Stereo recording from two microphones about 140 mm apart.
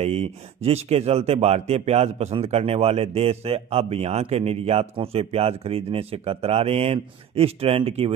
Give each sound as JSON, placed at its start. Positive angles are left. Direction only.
{"t": 0.0, "sound": "speech", "side_deg": -50}